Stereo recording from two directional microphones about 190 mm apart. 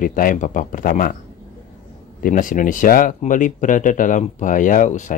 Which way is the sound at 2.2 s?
45° left (ahead or behind).